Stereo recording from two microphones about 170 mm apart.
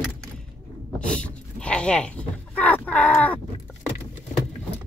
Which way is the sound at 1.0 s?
5° left (ahead or behind).